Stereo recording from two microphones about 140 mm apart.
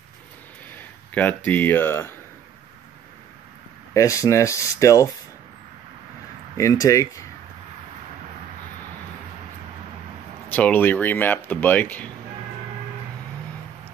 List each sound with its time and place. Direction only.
0.7 s speech: 10° left (ahead or behind)
3.9 s speech: 25° left (ahead or behind)
6.5 s speech: 25° left (ahead or behind)
10.5 s speech: 15° left (ahead or behind)